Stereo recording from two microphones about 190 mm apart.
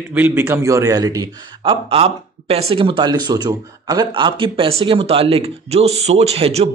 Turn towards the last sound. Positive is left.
turn(degrees=-30)  # may be behind; listen again after turning